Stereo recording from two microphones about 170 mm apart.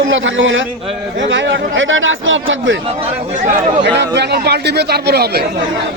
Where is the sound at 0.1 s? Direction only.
90° right.